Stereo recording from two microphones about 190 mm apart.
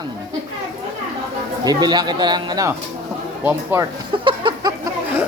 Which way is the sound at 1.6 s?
20° right (ahead or behind).